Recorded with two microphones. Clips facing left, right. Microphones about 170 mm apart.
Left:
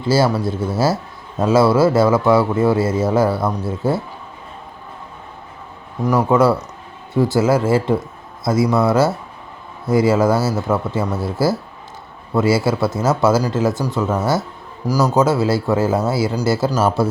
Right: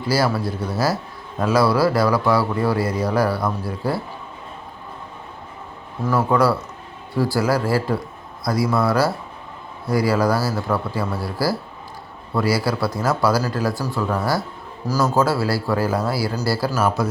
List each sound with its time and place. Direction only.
0.0 s speech: 25° left (ahead or behind)
6.0 s speech: 15° left (ahead or behind)